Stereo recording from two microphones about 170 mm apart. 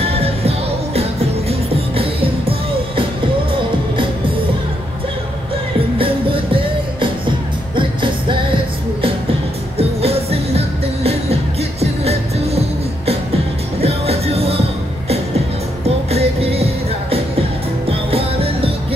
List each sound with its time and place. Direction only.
0.0 s music: 35° right (ahead or behind)
5.9 s music: 30° right (ahead or behind)
9.8 s music: 35° right (ahead or behind)
11.8 s music: 35° right (ahead or behind)
13.7 s music: 35° right (ahead or behind)
16.1 s music: 35° right (ahead or behind)